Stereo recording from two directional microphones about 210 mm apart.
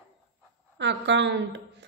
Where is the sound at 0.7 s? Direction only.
60° right (ahead or behind).